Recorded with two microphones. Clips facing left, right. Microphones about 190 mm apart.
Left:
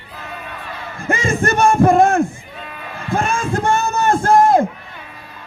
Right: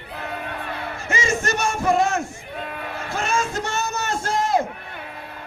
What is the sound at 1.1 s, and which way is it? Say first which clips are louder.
Crowd: left 6 dB; 55° left (ahead or behind).